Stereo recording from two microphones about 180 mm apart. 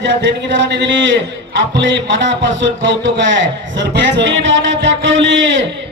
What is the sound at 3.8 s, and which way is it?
A man's voice, 75° right (ahead or behind).